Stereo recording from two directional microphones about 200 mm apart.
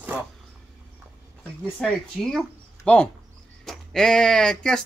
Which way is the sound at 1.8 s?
5° left (ahead or behind).